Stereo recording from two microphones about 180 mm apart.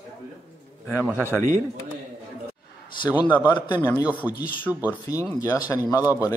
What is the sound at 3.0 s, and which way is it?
Speech, 25° left (ahead or behind).